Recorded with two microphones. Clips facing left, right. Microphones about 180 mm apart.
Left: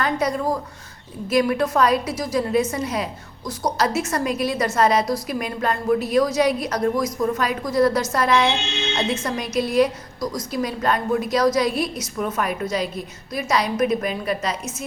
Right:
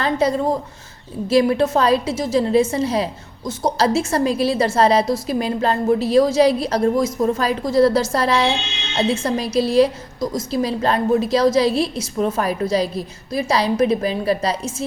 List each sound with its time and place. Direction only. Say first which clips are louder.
0.0 s a woman's voice: right 4 dB; 30° right (ahead or behind)